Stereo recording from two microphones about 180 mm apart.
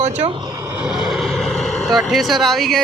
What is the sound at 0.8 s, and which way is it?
Vehicle, 5° right (ahead or behind).